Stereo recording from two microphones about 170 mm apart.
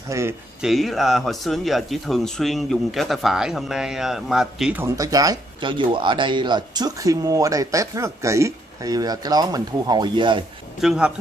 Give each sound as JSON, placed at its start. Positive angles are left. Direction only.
{"t": 0.1, "sound": "speech", "side_deg": -15}
{"t": 0.6, "sound": "speech", "side_deg": 0}
{"t": 4.8, "sound": "speech", "side_deg": -20}
{"t": 10.8, "sound": "speech", "side_deg": -5}